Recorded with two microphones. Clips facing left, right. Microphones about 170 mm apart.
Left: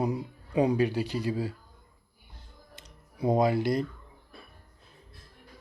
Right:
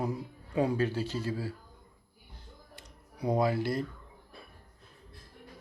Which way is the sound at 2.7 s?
20° left (ahead or behind).